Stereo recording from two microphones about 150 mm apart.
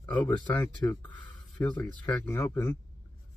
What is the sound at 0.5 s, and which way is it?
Speech, 15° left (ahead or behind).